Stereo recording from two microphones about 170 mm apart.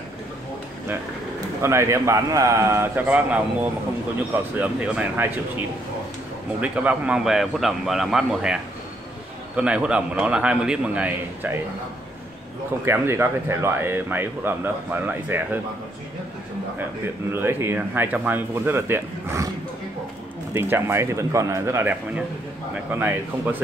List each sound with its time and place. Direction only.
1.6 s speech: 15° right (ahead or behind)
4.6 s speech: 10° right (ahead or behind)
6.6 s a man's voice: 10° right (ahead or behind)
9.6 s speech: 5° right (ahead or behind)
12.8 s speech: 15° right (ahead or behind)
17.3 s speech: 15° right (ahead or behind)
20.5 s speech: 15° right (ahead or behind)